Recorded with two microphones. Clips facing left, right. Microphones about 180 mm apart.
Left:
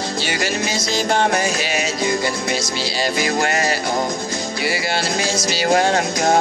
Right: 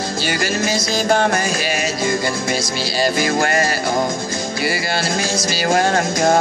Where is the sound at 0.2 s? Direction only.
45° right (ahead or behind).